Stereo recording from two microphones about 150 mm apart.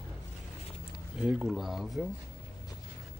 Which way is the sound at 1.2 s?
5° right (ahead or behind).